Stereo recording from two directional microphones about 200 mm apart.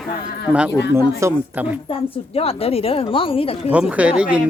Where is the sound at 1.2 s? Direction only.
10° right (ahead or behind).